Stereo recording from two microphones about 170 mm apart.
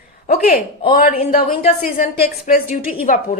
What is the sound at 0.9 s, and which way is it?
A woman's voice, 55° left (ahead or behind).